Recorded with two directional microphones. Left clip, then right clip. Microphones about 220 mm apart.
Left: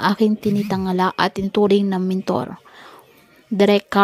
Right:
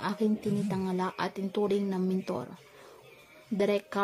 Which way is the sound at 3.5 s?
35° left (ahead or behind).